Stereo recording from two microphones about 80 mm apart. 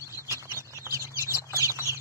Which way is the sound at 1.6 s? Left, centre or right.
Right.